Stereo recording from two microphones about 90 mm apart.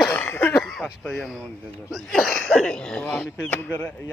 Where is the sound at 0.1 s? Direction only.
25° left (ahead or behind).